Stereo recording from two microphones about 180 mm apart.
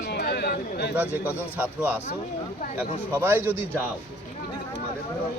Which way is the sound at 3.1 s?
10° right (ahead or behind).